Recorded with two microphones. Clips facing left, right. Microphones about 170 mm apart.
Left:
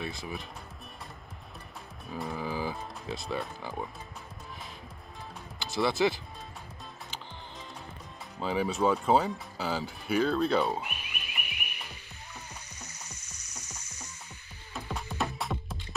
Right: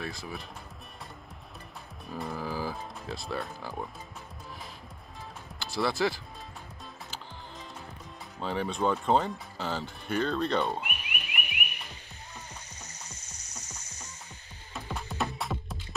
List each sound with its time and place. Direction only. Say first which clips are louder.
0.0 s speech: left 1 dB; centre (ahead or behind)
2.0 s speech: even; centre (ahead or behind)
5.6 s music: left 1 dB; centre (ahead or behind)
5.9 s speech: left 2 dB; 25° left (ahead or behind)
8.4 s speech: left 2 dB; 5° left (ahead or behind)
10.8 s croak: right 1 dB; 15° right (ahead or behind)
13.1 s music: right 1 dB; 10° left (ahead or behind)
15.0 s music: right 1 dB; centre (ahead or behind)